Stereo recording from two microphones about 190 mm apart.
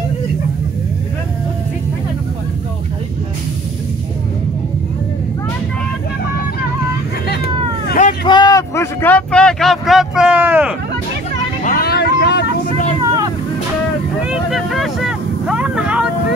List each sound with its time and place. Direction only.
7.2 s vehicle: 55° left (ahead or behind)
8.3 s a sound: 20° left (ahead or behind); by 10.7 s 10° right (ahead or behind)
11.6 s vehicle: 50° left (ahead or behind)
14.2 s vehicle: centre (ahead or behind)